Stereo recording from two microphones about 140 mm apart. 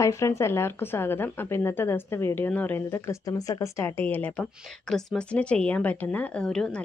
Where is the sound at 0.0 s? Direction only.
20° left (ahead or behind).